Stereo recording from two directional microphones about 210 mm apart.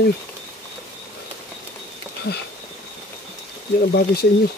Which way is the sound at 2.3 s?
50° left (ahead or behind).